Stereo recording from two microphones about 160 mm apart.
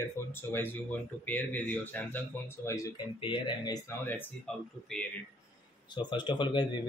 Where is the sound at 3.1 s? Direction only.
30° left (ahead or behind).